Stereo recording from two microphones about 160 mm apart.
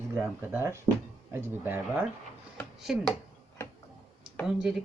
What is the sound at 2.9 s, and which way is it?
Speech, centre (ahead or behind).